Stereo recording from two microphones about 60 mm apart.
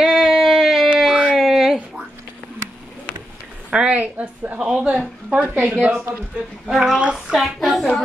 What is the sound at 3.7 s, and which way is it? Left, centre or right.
Speech, centre.